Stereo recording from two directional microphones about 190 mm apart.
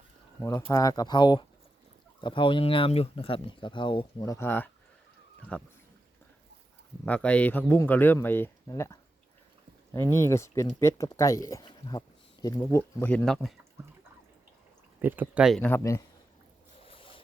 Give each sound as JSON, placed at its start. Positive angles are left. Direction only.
{"t": 0.7, "sound": "speech", "side_deg": 20}
{"t": 7.0, "sound": "speech", "side_deg": 5}
{"t": 14.9, "sound": "speech", "side_deg": -10}
{"t": 15.6, "sound": "speech", "side_deg": 15}
{"t": 16.8, "sound": "a sound", "side_deg": 30}